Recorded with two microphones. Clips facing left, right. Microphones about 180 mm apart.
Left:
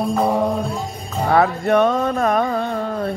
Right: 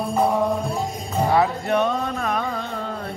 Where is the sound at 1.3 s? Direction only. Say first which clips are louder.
Left 6 dB; 55° left (ahead or behind).